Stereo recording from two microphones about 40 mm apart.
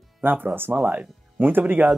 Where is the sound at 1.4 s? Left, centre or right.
Right.